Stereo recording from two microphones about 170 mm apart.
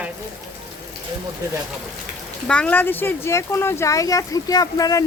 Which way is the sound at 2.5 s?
5° left (ahead or behind).